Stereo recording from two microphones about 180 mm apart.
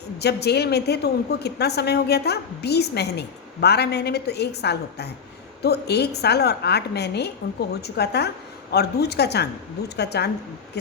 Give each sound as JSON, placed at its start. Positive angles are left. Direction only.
{"t": 0.2, "sound": "a woman's voice", "side_deg": 65}